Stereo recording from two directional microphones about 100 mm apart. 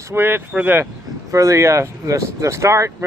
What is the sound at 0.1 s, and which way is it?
Speech, 20° right (ahead or behind).